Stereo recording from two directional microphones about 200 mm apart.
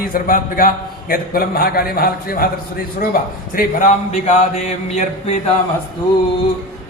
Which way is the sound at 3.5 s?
40° left (ahead or behind).